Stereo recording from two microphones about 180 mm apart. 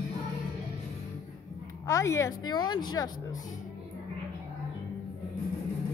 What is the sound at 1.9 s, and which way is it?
Speech, 15° left (ahead or behind).